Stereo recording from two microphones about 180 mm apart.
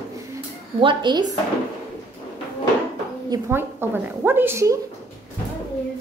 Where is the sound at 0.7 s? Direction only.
25° right (ahead or behind).